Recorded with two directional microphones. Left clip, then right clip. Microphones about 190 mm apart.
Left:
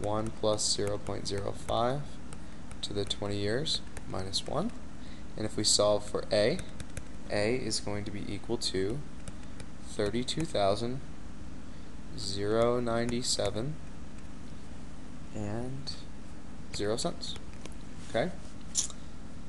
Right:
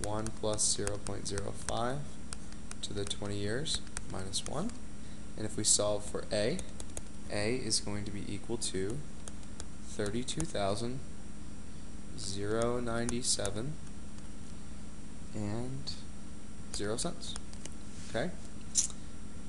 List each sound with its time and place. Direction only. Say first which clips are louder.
0.4 s speech: left 4 dB; 25° left (ahead or behind)
10.0 s speech: left 5 dB; 25° left (ahead or behind)
12.2 s speech: left 5 dB; 20° left (ahead or behind)
15.3 s speech: left 2 dB; centre (ahead or behind)
16.7 s speech: left 5 dB; 20° left (ahead or behind)
18.8 s biting: even; 25° left (ahead or behind)